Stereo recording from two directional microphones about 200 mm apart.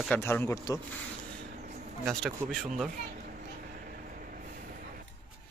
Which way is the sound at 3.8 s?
45° right (ahead or behind).